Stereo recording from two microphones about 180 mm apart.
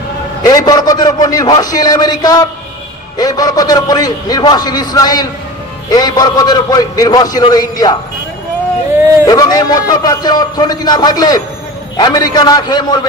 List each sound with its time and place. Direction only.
0.4 s a man's voice: 20° left (ahead or behind)
9.2 s a man's voice: 20° left (ahead or behind)